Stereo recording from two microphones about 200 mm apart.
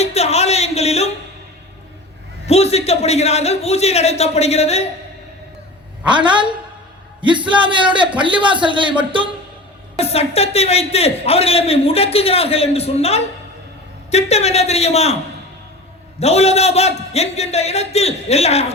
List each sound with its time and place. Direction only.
0.0 s music: 30° left (ahead or behind)
2.5 s a man's voice: 30° left (ahead or behind)
6.1 s speech: 25° right (ahead or behind)
10.0 s a man's voice: 30° left (ahead or behind)
16.2 s a man's voice: 30° left (ahead or behind)